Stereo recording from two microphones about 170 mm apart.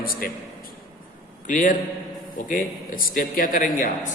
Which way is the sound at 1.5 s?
50° left (ahead or behind).